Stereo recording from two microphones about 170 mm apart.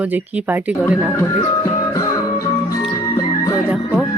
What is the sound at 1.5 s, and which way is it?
Music, 20° left (ahead or behind).